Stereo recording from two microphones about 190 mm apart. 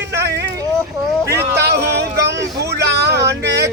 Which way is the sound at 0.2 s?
60° right (ahead or behind).